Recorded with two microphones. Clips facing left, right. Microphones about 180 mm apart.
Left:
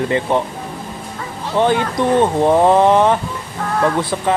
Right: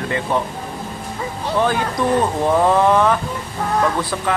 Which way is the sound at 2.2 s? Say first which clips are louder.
Left 4 dB; 25° left (ahead or behind).